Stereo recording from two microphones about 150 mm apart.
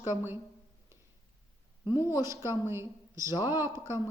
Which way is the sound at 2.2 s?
20° right (ahead or behind).